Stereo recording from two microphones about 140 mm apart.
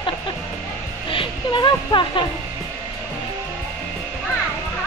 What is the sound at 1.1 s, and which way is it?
Speech, 35° left (ahead or behind).